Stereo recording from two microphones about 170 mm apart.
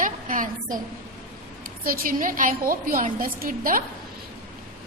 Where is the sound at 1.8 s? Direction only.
55° right (ahead or behind).